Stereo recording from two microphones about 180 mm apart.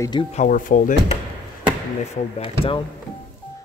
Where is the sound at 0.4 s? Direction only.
45° left (ahead or behind).